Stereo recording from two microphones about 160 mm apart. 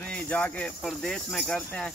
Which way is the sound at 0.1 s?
10° left (ahead or behind).